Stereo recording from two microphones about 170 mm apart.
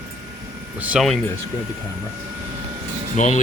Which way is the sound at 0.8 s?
5° right (ahead or behind).